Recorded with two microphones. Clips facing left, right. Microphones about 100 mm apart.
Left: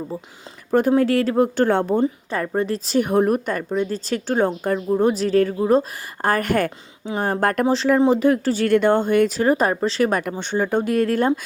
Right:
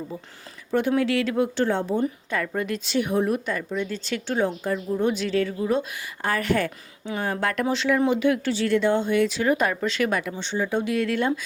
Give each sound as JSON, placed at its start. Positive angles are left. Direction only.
{"t": 0.7, "sound": "speech", "side_deg": 40}
{"t": 2.3, "sound": "speech", "side_deg": 35}
{"t": 8.6, "sound": "speech", "side_deg": 55}